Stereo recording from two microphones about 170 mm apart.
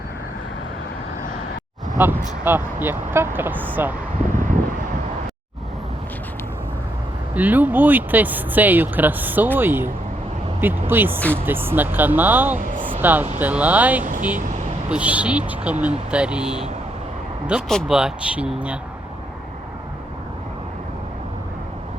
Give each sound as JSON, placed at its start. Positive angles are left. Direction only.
{"t": 2.0, "sound": "speech", "side_deg": -10}
{"t": 7.3, "sound": "speech", "side_deg": -10}
{"t": 14.0, "sound": "speech", "side_deg": -50}
{"t": 14.8, "sound": "speech", "side_deg": -5}